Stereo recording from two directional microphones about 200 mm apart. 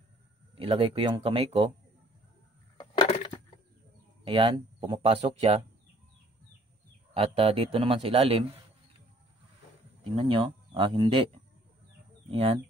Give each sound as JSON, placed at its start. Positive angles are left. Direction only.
{"t": 0.6, "sound": "speech", "side_deg": -30}
{"t": 2.8, "sound": "crushing", "side_deg": 25}
{"t": 4.2, "sound": "speech", "side_deg": -25}
{"t": 7.2, "sound": "speech", "side_deg": -30}
{"t": 10.0, "sound": "speech", "side_deg": -30}